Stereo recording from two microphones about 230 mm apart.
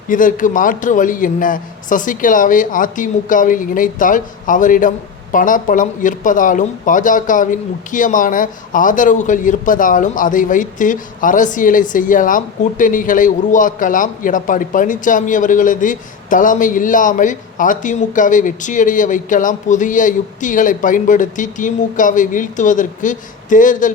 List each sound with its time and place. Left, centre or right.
0.1 s a man's voice: left